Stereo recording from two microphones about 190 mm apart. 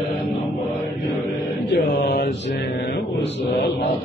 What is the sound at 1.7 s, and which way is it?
Mantra, 55° left (ahead or behind).